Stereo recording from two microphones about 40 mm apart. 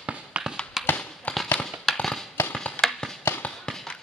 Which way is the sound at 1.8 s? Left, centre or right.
Centre.